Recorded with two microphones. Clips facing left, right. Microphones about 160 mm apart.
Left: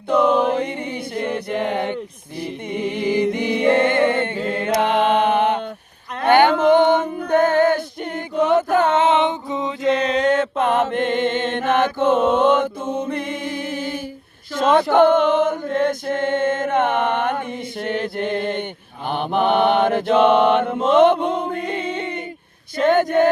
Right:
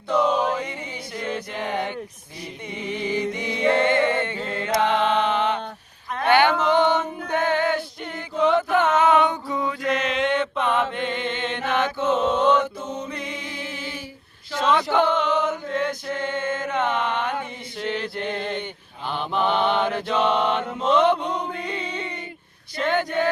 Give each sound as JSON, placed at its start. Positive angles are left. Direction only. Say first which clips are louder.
{"t": 0.1, "sound": "chant", "louder": "left 5 dB", "side_deg": 55}
{"t": 1.1, "sound": "a sound", "louder": "left 5 dB", "side_deg": 60}
{"t": 2.7, "sound": "a capella", "louder": "left 6 dB", "side_deg": 60}
{"t": 6.2, "sound": "female singing", "louder": "left 5 dB", "side_deg": 50}
{"t": 8.9, "sound": "mantra", "louder": "left 2 dB", "side_deg": 25}
{"t": 14.5, "sound": "chant", "louder": "left 5 dB", "side_deg": 50}
{"t": 17.7, "sound": "music", "louder": "left 3 dB", "side_deg": 50}
{"t": 19.0, "sound": "mantra", "louder": "left 5 dB", "side_deg": 55}
{"t": 22.8, "sound": "speech", "louder": "left 7 dB", "side_deg": 45}